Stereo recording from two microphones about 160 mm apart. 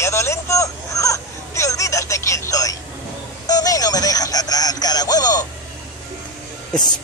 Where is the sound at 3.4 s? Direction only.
25° left (ahead or behind).